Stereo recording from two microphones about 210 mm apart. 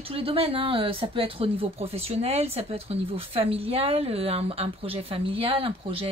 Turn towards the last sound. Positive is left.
turn(degrees=-25)  # may be behind; listen again after turning